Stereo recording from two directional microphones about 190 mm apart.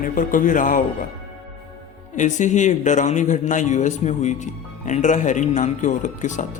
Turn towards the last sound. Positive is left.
turn(degrees=40)  # may be behind; listen again after turning